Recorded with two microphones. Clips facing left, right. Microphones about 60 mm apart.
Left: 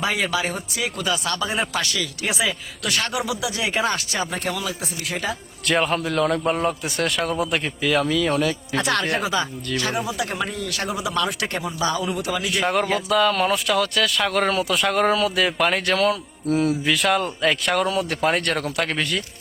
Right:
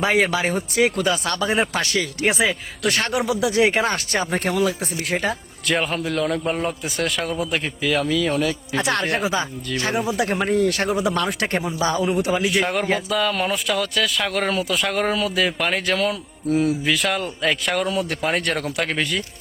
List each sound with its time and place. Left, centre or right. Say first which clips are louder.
0.0 s speech: right 4 dB; right
5.6 s speech: left 1 dB; centre
8.8 s a man's voice: right 1 dB; right
13.1 s speech: left 3 dB; centre